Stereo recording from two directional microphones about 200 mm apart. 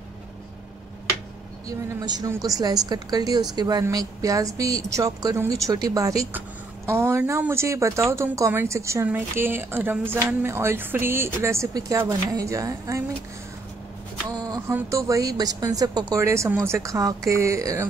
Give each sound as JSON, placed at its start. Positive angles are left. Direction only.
{"t": 1.7, "sound": "a woman's voice", "side_deg": -20}
{"t": 14.3, "sound": "speech", "side_deg": -20}